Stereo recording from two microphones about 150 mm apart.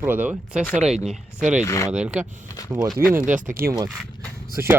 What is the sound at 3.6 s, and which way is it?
Speech, 25° right (ahead or behind).